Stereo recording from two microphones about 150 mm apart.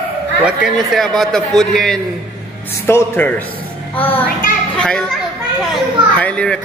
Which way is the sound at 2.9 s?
15° left (ahead or behind).